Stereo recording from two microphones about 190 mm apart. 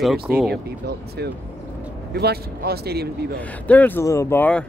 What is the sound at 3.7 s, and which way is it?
Speech, 10° left (ahead or behind).